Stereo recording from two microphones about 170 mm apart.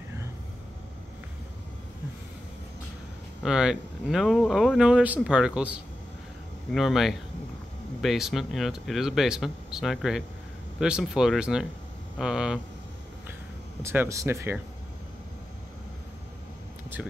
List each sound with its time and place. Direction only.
3.4 s speech: 5° right (ahead or behind)
13.8 s speech: 15° right (ahead or behind)